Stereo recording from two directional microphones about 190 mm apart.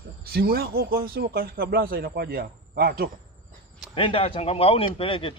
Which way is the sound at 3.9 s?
25° left (ahead or behind).